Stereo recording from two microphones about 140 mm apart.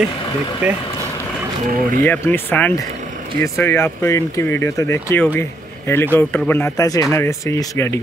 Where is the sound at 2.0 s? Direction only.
15° left (ahead or behind).